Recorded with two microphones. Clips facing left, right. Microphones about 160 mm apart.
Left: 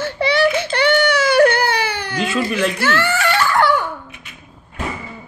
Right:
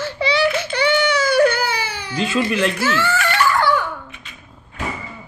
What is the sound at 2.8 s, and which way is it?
Giggle, 65° left (ahead or behind).